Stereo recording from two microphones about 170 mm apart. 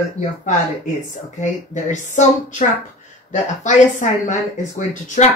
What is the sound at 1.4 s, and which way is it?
Speech, 45° left (ahead or behind).